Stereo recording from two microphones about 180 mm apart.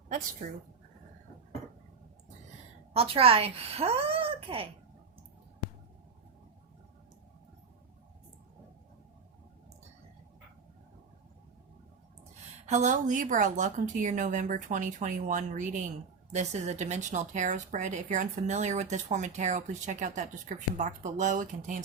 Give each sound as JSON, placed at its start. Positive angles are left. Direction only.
{"t": 0.4, "sound": "a woman's voice", "side_deg": -45}
{"t": 2.9, "sound": "speech", "side_deg": -30}
{"t": 12.6, "sound": "a woman's voice", "side_deg": -40}